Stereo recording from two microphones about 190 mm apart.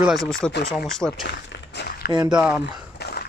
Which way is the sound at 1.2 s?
65° left (ahead or behind).